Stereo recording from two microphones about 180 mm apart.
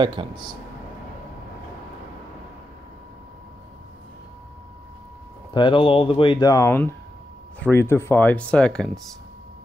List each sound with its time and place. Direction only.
0.0 s speech: 25° right (ahead or behind)
5.5 s speech: 25° left (ahead or behind); by 9.0 s 5° left (ahead or behind)